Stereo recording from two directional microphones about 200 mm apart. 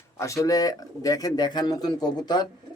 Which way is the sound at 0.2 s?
15° left (ahead or behind).